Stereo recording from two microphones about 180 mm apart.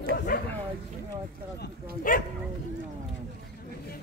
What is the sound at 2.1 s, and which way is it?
Speech, 50° left (ahead or behind).